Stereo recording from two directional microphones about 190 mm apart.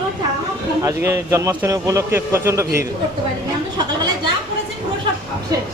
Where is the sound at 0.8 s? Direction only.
15° right (ahead or behind).